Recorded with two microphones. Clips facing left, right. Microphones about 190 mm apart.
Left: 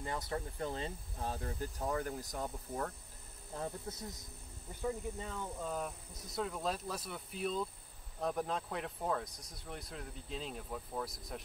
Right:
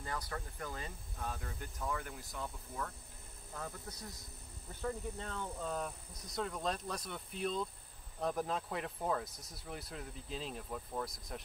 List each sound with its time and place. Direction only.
0.0 s speech: 25° left (ahead or behind); by 2.9 s 40° left (ahead or behind)
3.5 s speech: 25° left (ahead or behind)
4.8 s speech: 5° left (ahead or behind)